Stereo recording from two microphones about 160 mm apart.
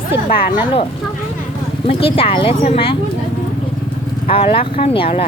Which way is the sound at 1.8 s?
35° left (ahead or behind).